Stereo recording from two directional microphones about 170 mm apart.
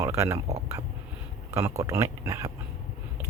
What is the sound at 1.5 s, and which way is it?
Speech, 15° right (ahead or behind).